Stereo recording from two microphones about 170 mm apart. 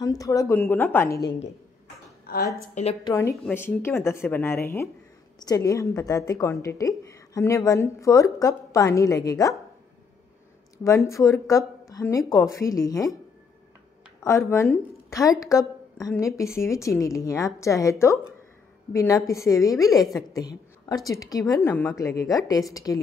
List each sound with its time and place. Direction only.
0.0 s a woman's voice: 20° left (ahead or behind)
2.3 s a sound: 65° left (ahead or behind)
2.7 s a woman's voice: 40° left (ahead or behind)
3.0 s a woman's voice: 20° left (ahead or behind)
3.4 s a woman's voice: 10° left (ahead or behind)
10.8 s a woman's voice: 20° left (ahead or behind)
14.2 s a woman's voice: 15° left (ahead or behind)